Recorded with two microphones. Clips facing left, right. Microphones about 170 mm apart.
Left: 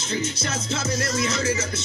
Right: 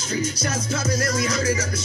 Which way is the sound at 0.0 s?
25° left (ahead or behind).